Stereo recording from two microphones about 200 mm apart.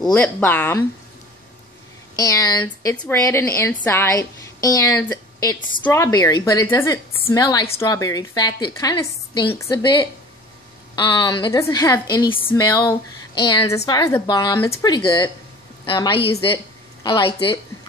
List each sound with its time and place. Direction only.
0.0 s a woman's voice: 5° left (ahead or behind)
2.1 s a woman's voice: 15° left (ahead or behind)